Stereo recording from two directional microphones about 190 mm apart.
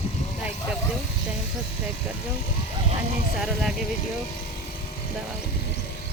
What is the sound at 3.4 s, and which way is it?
Speech, centre (ahead or behind).